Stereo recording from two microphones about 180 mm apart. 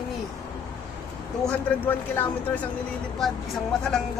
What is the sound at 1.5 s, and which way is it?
Speech, 10° left (ahead or behind).